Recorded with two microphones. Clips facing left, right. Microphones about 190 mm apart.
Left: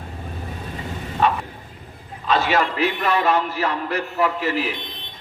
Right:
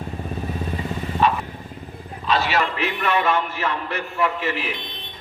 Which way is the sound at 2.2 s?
50° left (ahead or behind).